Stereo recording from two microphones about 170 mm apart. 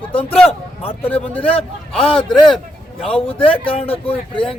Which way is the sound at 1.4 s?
35° left (ahead or behind).